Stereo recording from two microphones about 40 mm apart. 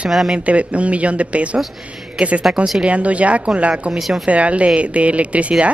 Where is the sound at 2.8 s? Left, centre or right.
Right.